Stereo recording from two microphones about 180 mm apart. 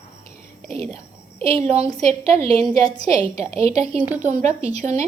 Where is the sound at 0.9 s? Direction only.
35° right (ahead or behind).